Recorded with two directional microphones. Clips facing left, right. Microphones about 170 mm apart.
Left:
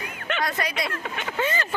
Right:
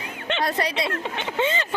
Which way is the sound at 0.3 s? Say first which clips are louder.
Right 3 dB; 30° right (ahead or behind).